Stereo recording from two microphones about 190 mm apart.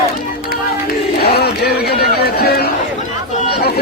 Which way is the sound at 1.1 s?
55° left (ahead or behind).